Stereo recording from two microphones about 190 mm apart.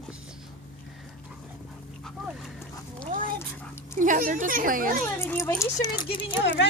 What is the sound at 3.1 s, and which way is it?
Dog, 45° right (ahead or behind).